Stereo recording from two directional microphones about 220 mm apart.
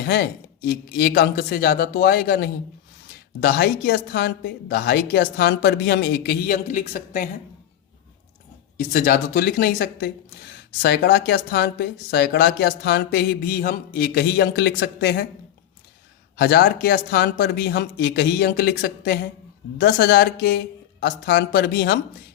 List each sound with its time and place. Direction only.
0.0 s speech: 45° left (ahead or behind)
8.8 s speech: 40° left (ahead or behind)
16.4 s speech: 45° left (ahead or behind)